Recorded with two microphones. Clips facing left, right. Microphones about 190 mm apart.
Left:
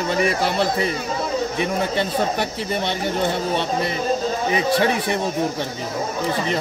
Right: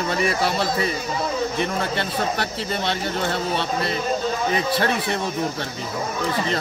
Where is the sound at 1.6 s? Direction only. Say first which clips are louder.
Left 3 dB; 15° left (ahead or behind).